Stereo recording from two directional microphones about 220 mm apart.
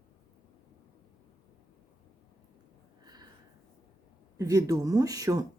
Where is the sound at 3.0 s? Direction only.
20° right (ahead or behind).